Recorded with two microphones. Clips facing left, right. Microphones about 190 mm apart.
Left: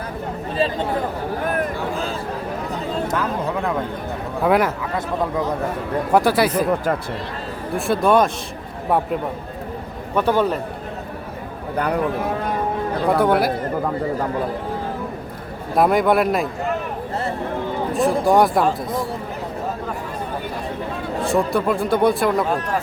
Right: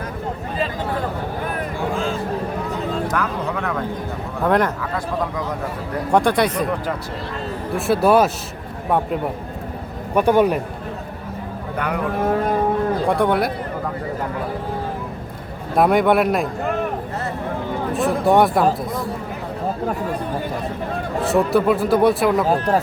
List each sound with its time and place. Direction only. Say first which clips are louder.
3.1 s speech: left 1 dB; 25° left (ahead or behind)
4.4 s a man's voice: left 1 dB; 5° left (ahead or behind)
6.1 s speech: even; 5° left (ahead or behind)
7.8 s speech: right 1 dB; 5° right (ahead or behind)
10.2 s a man's voice: right 3 dB; 15° right (ahead or behind)
13.1 s speech: left 4 dB; centre (ahead or behind)
15.7 s speech: right 1 dB; centre (ahead or behind)
17.9 s speech: even; centre (ahead or behind)
21.2 s speech: right 3 dB; centre (ahead or behind)
22.4 s speech: right 4 dB; 35° right (ahead or behind)